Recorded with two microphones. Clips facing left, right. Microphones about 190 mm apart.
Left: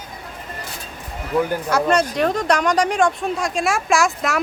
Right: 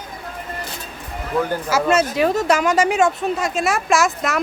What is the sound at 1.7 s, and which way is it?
Speech, 5° right (ahead or behind).